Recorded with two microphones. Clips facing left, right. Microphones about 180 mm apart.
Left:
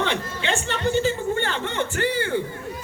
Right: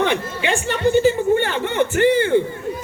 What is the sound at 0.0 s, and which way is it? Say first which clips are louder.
Chatter: right 5 dB; 15° right (ahead or behind).